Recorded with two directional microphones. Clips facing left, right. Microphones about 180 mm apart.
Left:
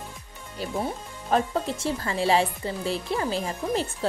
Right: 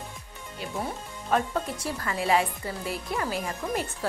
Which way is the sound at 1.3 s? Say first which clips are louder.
Left 2 dB; 30° left (ahead or behind).